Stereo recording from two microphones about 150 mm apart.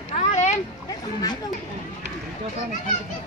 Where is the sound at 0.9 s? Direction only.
25° left (ahead or behind).